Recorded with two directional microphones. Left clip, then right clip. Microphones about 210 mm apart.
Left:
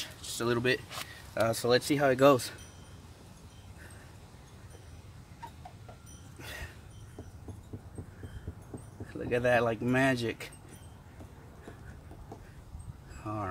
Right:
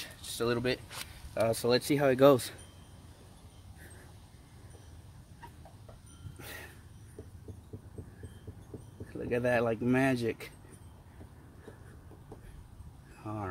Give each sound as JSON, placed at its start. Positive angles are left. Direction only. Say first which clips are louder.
{"t": 0.0, "sound": "speech", "louder": "even", "side_deg": -25}
{"t": 6.4, "sound": "a sound", "louder": "left 2 dB", "side_deg": -35}
{"t": 9.3, "sound": "speech", "louder": "left 2 dB", "side_deg": -35}
{"t": 13.2, "sound": "vehicle", "louder": "left 3 dB", "side_deg": -35}